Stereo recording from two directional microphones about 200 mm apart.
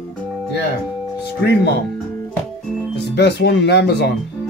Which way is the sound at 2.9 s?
60° left (ahead or behind).